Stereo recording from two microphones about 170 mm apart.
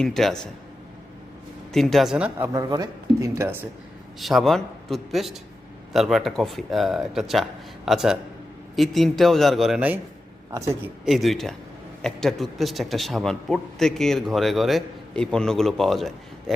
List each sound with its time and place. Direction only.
0.0 s a man's voice: centre (ahead or behind)
1.7 s a man's voice: centre (ahead or behind)
2.5 s speech: 20° right (ahead or behind)
4.2 s a man's voice: centre (ahead or behind)
11.0 s a man's voice: centre (ahead or behind)